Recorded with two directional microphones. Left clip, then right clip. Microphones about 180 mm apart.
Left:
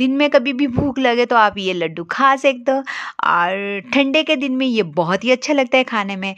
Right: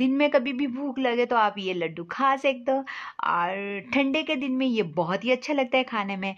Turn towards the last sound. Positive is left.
turn(degrees=25)  # may be behind; listen again after turning